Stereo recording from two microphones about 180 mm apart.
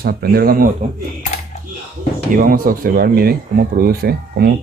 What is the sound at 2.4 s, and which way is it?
A man's voice, 50° right (ahead or behind).